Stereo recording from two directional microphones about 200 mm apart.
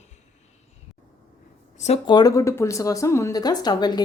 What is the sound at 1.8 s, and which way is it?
Speech, 25° left (ahead or behind).